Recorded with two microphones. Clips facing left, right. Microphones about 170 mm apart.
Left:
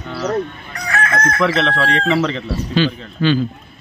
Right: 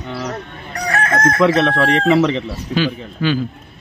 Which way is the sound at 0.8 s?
35° right (ahead or behind).